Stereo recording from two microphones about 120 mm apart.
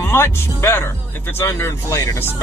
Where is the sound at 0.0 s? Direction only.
20° left (ahead or behind).